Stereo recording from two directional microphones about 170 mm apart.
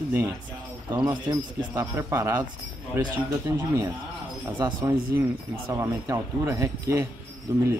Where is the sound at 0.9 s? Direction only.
10° right (ahead or behind).